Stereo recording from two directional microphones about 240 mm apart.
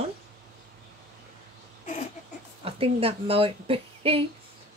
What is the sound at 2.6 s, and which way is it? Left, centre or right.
Speech, right.